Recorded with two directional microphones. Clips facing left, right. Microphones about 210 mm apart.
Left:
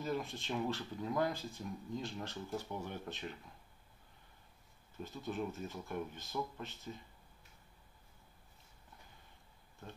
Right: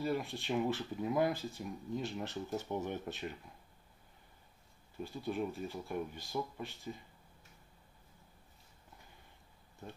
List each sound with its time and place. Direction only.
0.0 s speech: 15° right (ahead or behind)
5.0 s speech: 10° right (ahead or behind)